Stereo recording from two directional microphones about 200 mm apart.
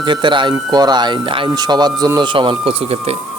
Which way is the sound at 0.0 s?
25° right (ahead or behind).